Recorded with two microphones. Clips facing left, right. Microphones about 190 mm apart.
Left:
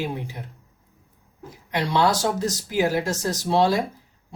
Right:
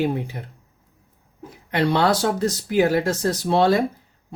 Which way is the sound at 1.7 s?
60° right (ahead or behind).